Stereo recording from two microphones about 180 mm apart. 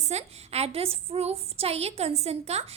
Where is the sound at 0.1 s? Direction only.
35° right (ahead or behind).